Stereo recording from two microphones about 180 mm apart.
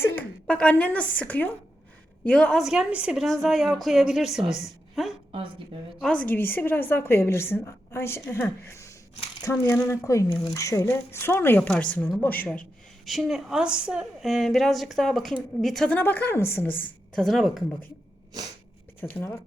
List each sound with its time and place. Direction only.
0.0 s a woman's voice: 10° left (ahead or behind)
5.3 s a woman's voice: 30° right (ahead or behind)
6.0 s speech: 5° left (ahead or behind)
13.1 s a woman's voice: centre (ahead or behind)
18.9 s speech: 10° left (ahead or behind)